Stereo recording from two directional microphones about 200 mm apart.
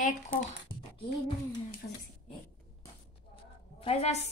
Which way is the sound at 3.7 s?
30° left (ahead or behind).